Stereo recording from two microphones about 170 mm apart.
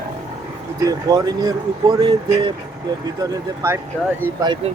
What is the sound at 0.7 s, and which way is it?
Speech, 20° right (ahead or behind).